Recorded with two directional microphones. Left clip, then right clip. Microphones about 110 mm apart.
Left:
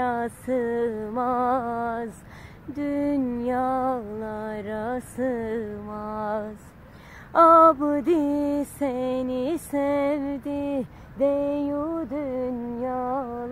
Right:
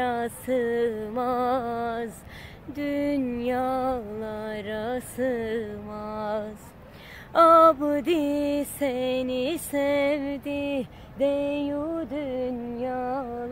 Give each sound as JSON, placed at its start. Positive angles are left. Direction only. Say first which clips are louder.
{"t": 0.0, "sound": "music", "louder": "left 1 dB", "side_deg": -15}
{"t": 3.3, "sound": "a sound", "louder": "left 2 dB", "side_deg": -15}
{"t": 7.3, "sound": "music", "louder": "left 1 dB", "side_deg": -10}
{"t": 13.0, "sound": "music", "louder": "left 2 dB", "side_deg": -30}